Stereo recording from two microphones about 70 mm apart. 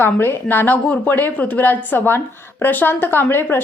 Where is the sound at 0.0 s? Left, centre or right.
Left.